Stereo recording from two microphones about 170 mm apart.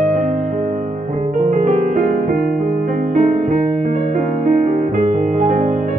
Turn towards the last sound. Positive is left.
turn(degrees=-50)  # may be behind; listen again after turning